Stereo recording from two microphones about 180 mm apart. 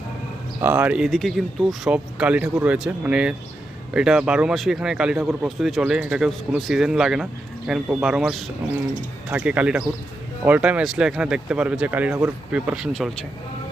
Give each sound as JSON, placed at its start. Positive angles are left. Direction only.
{"t": 0.6, "sound": "speech", "side_deg": -10}